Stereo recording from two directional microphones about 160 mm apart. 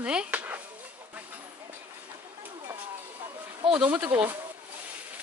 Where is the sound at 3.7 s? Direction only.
10° right (ahead or behind).